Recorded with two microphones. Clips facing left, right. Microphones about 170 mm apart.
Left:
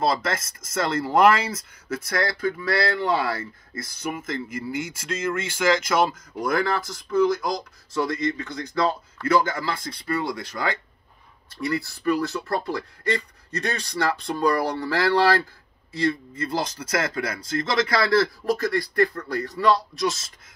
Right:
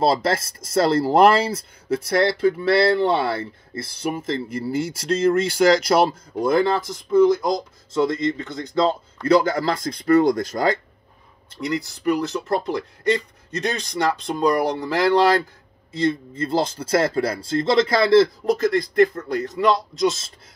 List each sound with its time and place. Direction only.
0.0 s speech: 30° right (ahead or behind)
11.6 s speech: 20° right (ahead or behind)